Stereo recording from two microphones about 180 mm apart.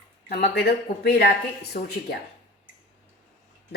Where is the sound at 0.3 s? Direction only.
55° left (ahead or behind).